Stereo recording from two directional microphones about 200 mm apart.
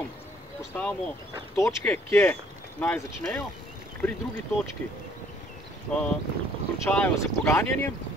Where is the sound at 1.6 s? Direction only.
15° left (ahead or behind).